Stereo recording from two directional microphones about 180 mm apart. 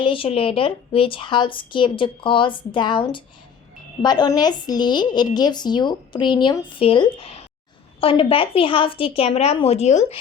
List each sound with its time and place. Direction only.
0.0 s a woman's voice: 30° left (ahead or behind)